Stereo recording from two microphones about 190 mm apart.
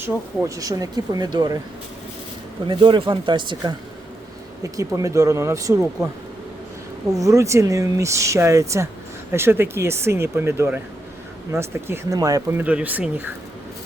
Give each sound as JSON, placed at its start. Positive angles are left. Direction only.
{"t": 0.0, "sound": "speech", "side_deg": -15}
{"t": 2.6, "sound": "speech", "side_deg": -25}
{"t": 7.2, "sound": "speech", "side_deg": -15}